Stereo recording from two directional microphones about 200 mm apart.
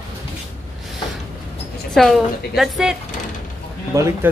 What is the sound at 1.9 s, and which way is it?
A woman's voice, centre (ahead or behind).